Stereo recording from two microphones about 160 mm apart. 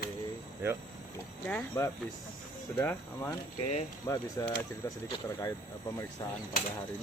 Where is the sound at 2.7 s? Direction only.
15° left (ahead or behind).